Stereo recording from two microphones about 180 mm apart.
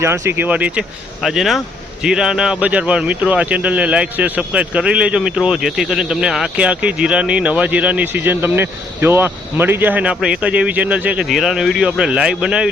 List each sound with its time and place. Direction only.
0.0 s speech: 15° right (ahead or behind)